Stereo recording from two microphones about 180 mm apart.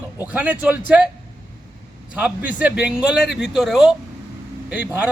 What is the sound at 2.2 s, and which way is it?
A man's voice, 10° right (ahead or behind).